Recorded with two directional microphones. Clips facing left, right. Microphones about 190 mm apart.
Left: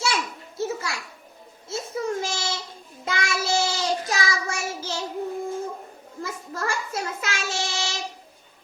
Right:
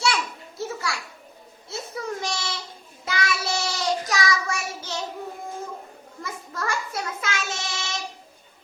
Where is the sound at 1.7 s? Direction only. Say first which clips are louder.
Left 4 dB; 25° left (ahead or behind).